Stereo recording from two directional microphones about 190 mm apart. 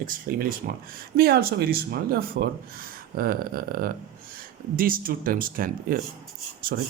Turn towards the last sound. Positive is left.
turn(degrees=-50)  # may be behind; listen again after turning